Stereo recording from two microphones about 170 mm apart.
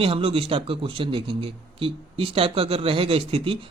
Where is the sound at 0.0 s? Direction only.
35° right (ahead or behind).